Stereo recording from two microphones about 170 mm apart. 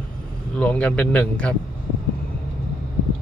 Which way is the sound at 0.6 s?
5° left (ahead or behind).